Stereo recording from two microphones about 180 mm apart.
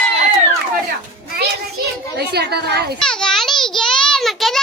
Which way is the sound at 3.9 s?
5° left (ahead or behind).